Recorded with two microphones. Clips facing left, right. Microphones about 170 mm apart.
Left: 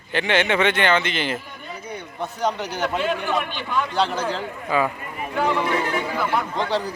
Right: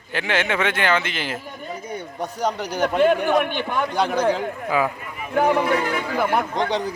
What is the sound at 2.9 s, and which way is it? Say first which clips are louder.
Speech: right 8 dB; 55° right (ahead or behind).